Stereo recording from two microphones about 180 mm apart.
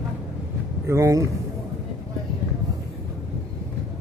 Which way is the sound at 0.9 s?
15° right (ahead or behind).